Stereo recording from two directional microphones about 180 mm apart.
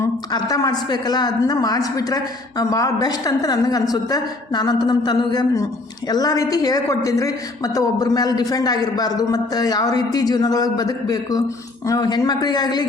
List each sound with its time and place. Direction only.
0.0 s a man's voice: 20° left (ahead or behind)